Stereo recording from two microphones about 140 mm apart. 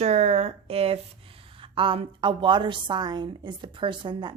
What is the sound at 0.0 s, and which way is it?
Speech, 50° right (ahead or behind).